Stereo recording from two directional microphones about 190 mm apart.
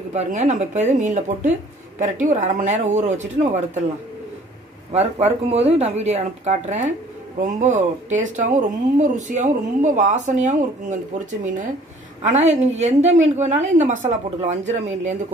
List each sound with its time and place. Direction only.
0.1 s speech: 35° right (ahead or behind)
4.9 s speech: 35° right (ahead or behind)
12.2 s speech: 40° right (ahead or behind)